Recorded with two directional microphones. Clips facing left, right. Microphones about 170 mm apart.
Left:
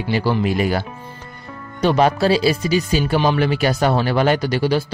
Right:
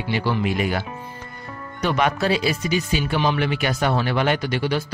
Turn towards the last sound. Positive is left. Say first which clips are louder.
# left 5 dB
turn(degrees=35)  # may be behind; listen again after turning